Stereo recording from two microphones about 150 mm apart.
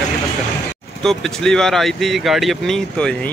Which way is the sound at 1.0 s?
5° left (ahead or behind).